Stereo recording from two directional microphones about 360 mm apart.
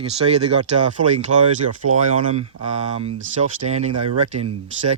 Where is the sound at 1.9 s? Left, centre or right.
Centre.